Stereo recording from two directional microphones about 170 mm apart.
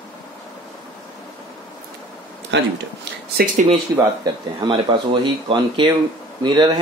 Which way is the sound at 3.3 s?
55° right (ahead or behind).